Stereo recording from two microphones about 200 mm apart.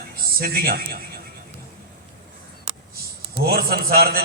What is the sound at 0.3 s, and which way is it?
Speech, 50° right (ahead or behind).